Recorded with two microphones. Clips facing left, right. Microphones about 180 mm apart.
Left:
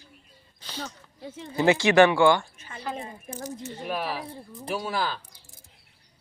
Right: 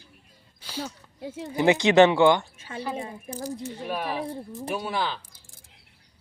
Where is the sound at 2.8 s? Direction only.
5° right (ahead or behind).